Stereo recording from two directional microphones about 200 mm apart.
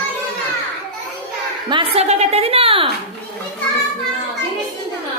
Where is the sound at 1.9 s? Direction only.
30° right (ahead or behind).